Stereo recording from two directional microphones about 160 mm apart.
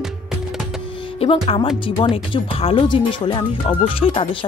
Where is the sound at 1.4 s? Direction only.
30° left (ahead or behind).